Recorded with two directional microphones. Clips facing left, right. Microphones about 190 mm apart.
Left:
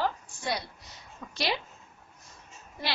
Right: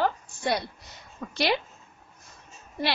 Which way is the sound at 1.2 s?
55° right (ahead or behind).